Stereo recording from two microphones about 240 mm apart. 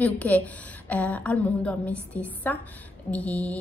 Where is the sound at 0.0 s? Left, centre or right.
Centre.